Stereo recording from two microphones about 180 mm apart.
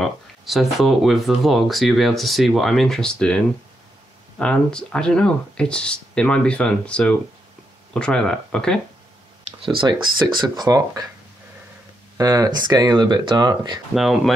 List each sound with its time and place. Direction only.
0.0 s speech: centre (ahead or behind)
9.6 s speech: 30° right (ahead or behind)
12.2 s speech: 20° right (ahead or behind)
13.9 s speech: centre (ahead or behind)